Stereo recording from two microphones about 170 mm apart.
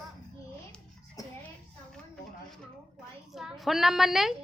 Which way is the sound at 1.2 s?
20° left (ahead or behind).